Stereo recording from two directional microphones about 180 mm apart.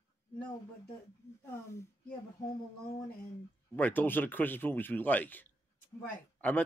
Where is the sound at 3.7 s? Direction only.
10° left (ahead or behind).